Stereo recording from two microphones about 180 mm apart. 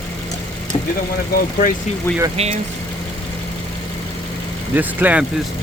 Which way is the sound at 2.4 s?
35° right (ahead or behind).